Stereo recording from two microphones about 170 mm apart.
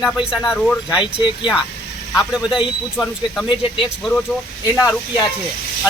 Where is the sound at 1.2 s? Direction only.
25° left (ahead or behind).